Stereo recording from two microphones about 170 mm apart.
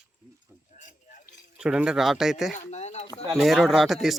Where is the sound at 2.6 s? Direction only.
40° left (ahead or behind).